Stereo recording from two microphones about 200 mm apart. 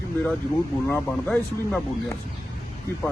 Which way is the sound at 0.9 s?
5° left (ahead or behind).